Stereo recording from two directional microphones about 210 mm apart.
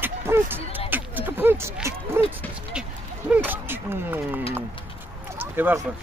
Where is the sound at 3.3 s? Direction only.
10° right (ahead or behind).